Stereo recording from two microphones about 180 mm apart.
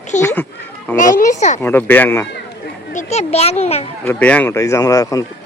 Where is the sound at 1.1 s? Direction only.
45° left (ahead or behind).